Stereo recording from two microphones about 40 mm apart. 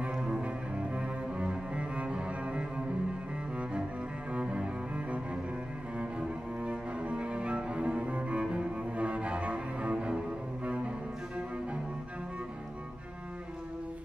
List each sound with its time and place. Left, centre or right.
0.1 s cello: centre
4.3 s cello: right
9.9 s cello: right